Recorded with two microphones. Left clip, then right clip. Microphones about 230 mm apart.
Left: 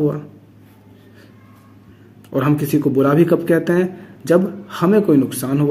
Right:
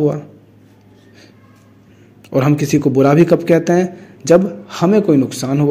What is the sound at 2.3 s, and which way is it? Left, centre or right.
Speech, right.